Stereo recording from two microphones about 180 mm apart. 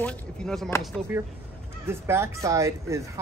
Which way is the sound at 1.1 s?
10° right (ahead or behind).